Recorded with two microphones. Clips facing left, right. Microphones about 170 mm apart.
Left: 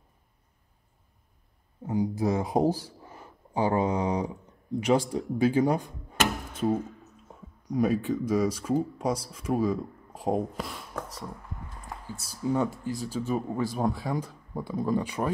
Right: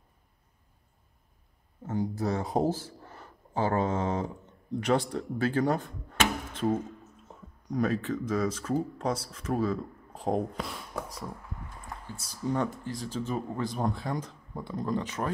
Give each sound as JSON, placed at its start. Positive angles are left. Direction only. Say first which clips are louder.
{"t": 1.9, "sound": "speech", "louder": "left 3 dB", "side_deg": 0}
{"t": 2.1, "sound": "speech", "louder": "left 2 dB", "side_deg": 20}
{"t": 2.9, "sound": "a sound", "louder": "left 1 dB", "side_deg": 15}
{"t": 4.3, "sound": "speech", "louder": "left 2 dB", "side_deg": 5}
{"t": 6.0, "sound": "music", "louder": "even", "side_deg": 0}
{"t": 7.2, "sound": "speech", "louder": "left 2 dB", "side_deg": 10}